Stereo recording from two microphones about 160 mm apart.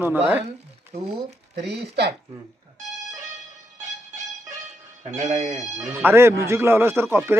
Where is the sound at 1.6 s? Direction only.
90° right.